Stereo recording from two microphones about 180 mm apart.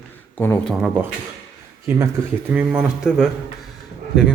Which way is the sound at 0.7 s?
5° right (ahead or behind).